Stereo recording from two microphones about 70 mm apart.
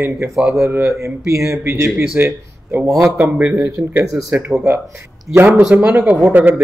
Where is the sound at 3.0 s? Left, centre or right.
Right.